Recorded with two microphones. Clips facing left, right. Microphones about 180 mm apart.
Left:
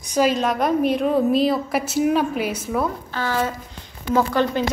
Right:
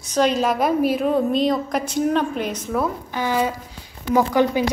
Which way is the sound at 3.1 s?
15° right (ahead or behind).